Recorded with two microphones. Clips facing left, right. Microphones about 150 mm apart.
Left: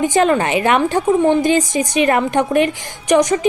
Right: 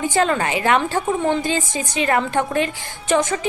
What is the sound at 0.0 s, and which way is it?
A woman's voice, 20° left (ahead or behind).